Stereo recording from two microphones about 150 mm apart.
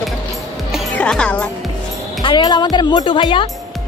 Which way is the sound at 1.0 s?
5° left (ahead or behind).